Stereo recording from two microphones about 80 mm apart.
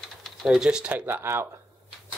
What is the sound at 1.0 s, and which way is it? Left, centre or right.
Speech, right.